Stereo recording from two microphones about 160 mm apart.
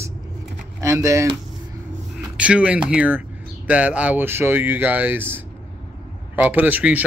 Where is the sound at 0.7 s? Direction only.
20° right (ahead or behind).